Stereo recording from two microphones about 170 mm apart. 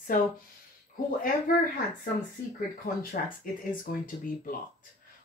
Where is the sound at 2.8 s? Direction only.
55° left (ahead or behind).